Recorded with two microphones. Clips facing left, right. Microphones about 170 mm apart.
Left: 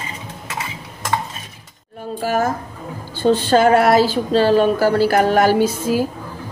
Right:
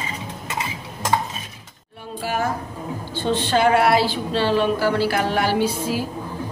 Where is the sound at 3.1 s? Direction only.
40° left (ahead or behind).